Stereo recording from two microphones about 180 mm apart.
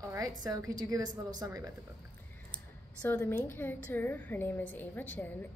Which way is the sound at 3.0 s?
10° left (ahead or behind).